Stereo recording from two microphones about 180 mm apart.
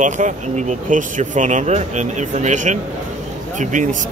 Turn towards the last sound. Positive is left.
turn(degrees=-45)  # may be behind; listen again after turning